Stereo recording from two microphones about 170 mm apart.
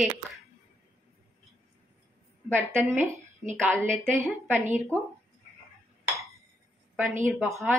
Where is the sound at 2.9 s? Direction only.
15° right (ahead or behind).